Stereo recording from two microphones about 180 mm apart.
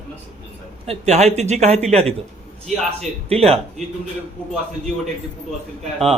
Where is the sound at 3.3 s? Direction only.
35° right (ahead or behind).